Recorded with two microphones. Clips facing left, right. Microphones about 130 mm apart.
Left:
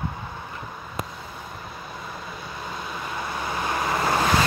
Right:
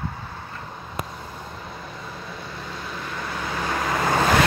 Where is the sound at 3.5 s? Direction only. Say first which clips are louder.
Right 1 dB; 15° left (ahead or behind).